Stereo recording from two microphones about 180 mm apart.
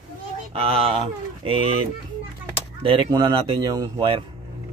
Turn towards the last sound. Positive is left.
turn(degrees=-30)  # may be behind; listen again after turning